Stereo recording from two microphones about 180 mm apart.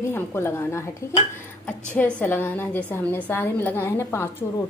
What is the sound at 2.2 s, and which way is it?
A woman's voice, 10° left (ahead or behind).